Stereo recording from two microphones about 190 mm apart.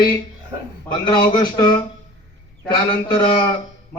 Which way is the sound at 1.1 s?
20° left (ahead or behind).